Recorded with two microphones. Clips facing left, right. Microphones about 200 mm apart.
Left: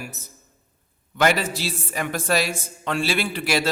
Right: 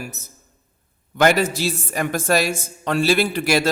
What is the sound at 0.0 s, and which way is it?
A man's voice, 45° right (ahead or behind).